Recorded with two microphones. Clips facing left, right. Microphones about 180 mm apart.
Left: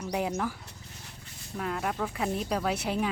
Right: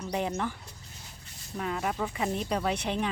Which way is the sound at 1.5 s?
Centre (ahead or behind).